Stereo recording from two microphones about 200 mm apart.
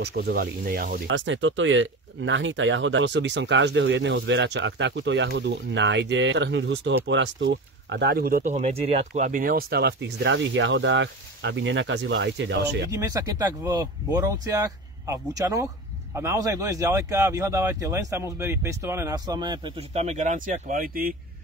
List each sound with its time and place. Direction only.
0.0 s speech: 55° right (ahead or behind)
1.0 s speech: 70° right (ahead or behind)
12.9 s speech: 15° right (ahead or behind); by 21.1 s 45° right (ahead or behind)